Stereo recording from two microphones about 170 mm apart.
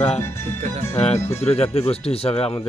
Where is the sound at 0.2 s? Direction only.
15° left (ahead or behind).